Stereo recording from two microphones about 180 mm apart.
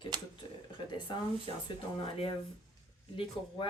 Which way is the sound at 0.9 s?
25° left (ahead or behind).